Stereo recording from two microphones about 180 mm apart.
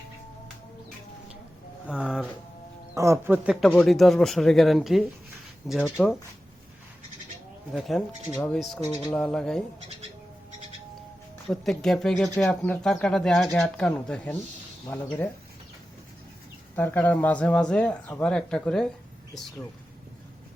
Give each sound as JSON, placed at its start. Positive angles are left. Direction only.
{"t": 1.9, "sound": "speech", "side_deg": -5}
{"t": 2.9, "sound": "speech", "side_deg": -15}
{"t": 7.7, "sound": "speech", "side_deg": 0}
{"t": 8.8, "sound": "speech", "side_deg": 15}
{"t": 9.1, "sound": "speech", "side_deg": 5}
{"t": 11.4, "sound": "speech", "side_deg": 0}
{"t": 16.7, "sound": "speech", "side_deg": 10}